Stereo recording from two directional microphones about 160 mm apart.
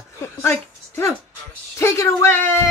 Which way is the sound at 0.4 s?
15° left (ahead or behind).